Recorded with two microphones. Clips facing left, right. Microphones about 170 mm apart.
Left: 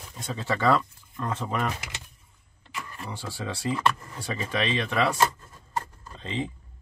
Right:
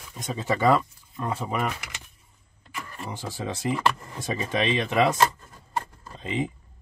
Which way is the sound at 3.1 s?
15° right (ahead or behind).